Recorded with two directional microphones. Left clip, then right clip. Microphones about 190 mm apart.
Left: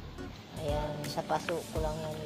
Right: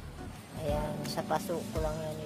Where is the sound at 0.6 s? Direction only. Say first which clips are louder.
Even; 5° right (ahead or behind).